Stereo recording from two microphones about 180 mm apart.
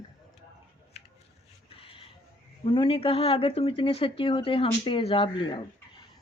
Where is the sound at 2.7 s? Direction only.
30° left (ahead or behind).